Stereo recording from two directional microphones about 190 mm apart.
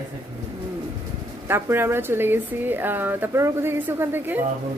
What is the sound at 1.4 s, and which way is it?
Speech, 10° right (ahead or behind).